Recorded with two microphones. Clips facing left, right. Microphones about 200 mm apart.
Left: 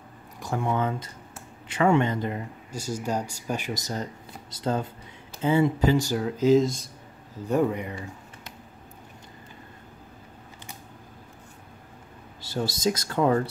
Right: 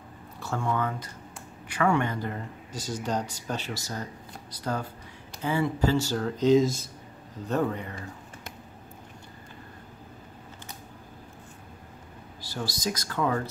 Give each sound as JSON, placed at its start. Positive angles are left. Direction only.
{"t": 0.4, "sound": "speech", "side_deg": 15}
{"t": 7.4, "sound": "speech", "side_deg": 10}
{"t": 12.4, "sound": "speech", "side_deg": 25}